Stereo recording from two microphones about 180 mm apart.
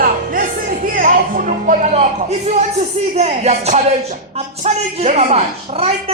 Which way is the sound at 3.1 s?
35° right (ahead or behind).